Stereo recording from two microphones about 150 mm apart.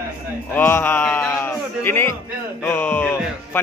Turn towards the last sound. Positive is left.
turn(degrees=15)  # may be behind; listen again after turning